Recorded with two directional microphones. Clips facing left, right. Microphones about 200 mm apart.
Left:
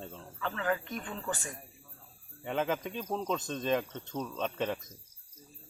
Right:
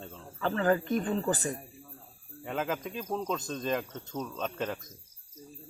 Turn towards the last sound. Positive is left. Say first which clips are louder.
# left 1 dB
turn(degrees=0)  # may be behind; listen again after turning